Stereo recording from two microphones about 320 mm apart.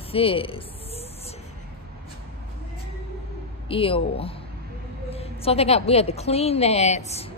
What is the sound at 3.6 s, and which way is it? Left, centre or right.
A woman's voice, centre.